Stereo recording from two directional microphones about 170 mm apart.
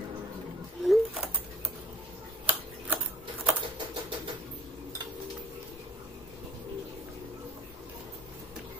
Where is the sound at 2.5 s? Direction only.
10° right (ahead or behind).